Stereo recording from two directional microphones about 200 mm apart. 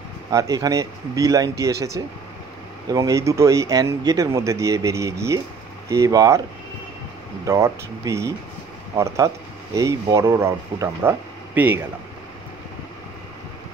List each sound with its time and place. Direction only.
0.3 s speech: 15° right (ahead or behind)
7.4 s speech: 15° right (ahead or behind)